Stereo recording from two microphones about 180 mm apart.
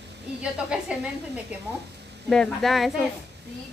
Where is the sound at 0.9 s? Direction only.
5° right (ahead or behind).